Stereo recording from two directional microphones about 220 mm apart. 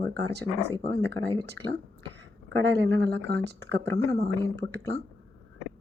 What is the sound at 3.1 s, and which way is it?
Speech, 50° right (ahead or behind).